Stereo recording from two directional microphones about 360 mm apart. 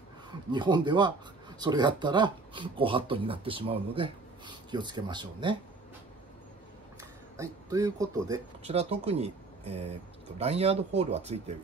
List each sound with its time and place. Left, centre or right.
0.5 s speech: centre
7.0 s speech: centre